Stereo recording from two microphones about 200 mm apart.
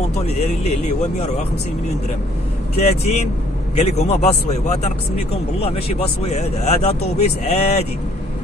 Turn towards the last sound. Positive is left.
turn(degrees=35)  # may be behind; listen again after turning